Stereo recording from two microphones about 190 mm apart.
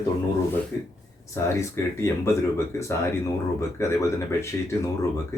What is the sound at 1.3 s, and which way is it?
Speech, 15° left (ahead or behind).